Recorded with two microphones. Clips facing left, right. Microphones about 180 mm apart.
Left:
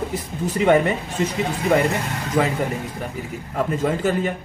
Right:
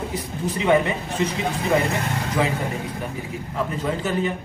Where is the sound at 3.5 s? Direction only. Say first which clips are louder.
Left 4 dB; 45° left (ahead or behind).